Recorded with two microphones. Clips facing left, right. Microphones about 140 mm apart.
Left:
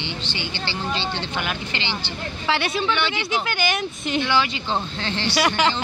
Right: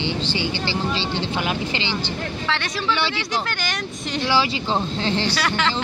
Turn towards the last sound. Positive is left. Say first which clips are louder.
# left 3 dB
turn(degrees=15)  # may be behind; listen again after turning